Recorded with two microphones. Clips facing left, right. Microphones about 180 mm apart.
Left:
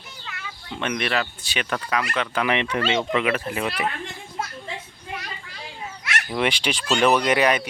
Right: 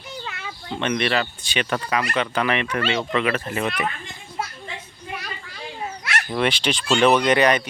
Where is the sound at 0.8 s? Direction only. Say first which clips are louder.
Right 3 dB; centre (ahead or behind).